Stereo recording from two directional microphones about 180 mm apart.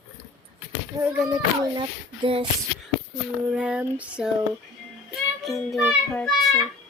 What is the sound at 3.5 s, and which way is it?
Speech, 5° right (ahead or behind).